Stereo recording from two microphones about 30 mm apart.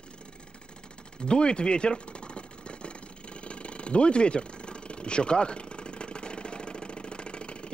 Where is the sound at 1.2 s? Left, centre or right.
Left.